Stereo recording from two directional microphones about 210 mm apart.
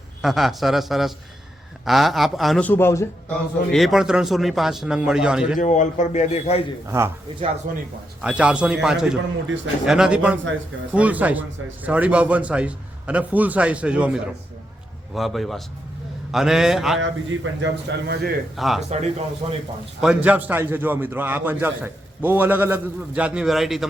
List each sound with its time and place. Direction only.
0.2 s speech: centre (ahead or behind)
3.7 s speech: centre (ahead or behind)
5.5 s a man's voice: 35° left (ahead or behind)
6.8 s a man's voice: 15° right (ahead or behind)
8.2 s a man's voice: 5° right (ahead or behind)
17.0 s a man's voice: 60° right (ahead or behind)
18.5 s speech: centre (ahead or behind)
18.9 s speech: 30° right (ahead or behind)
20.0 s a man's voice: 5° right (ahead or behind)